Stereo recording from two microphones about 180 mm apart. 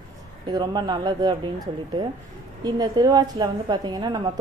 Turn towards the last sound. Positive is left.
turn(degrees=-25)  # may be behind; listen again after turning